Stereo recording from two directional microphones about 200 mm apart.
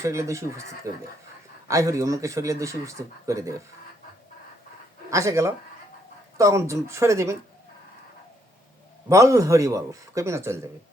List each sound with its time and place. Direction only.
0.0 s speech: 15° right (ahead or behind)
5.1 s speech: 15° right (ahead or behind)
9.0 s speech: 15° right (ahead or behind)